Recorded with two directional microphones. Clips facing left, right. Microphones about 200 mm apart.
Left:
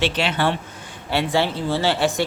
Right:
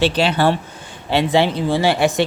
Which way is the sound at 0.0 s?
35° right (ahead or behind).